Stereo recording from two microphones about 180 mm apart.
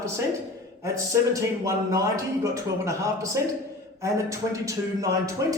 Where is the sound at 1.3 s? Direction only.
15° right (ahead or behind).